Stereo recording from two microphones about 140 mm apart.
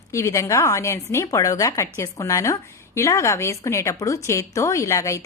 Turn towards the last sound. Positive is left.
turn(degrees=20)  # may be behind; listen again after turning